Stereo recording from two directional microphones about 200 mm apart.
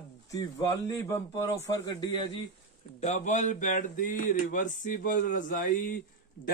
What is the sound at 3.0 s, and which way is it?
Speech, 35° left (ahead or behind).